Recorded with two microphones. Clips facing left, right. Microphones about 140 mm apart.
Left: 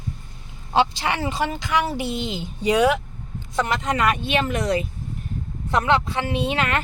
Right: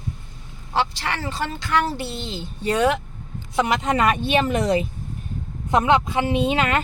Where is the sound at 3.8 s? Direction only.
25° right (ahead or behind).